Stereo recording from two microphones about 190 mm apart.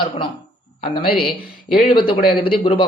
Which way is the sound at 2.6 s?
30° left (ahead or behind).